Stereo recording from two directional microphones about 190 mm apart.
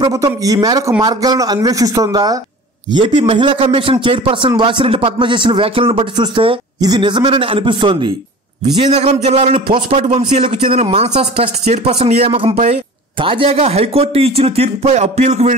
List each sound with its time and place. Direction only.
0.0 s a man's voice: 20° right (ahead or behind); by 15.5 s 35° right (ahead or behind)